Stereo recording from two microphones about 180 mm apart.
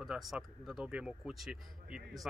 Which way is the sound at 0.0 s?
Centre (ahead or behind).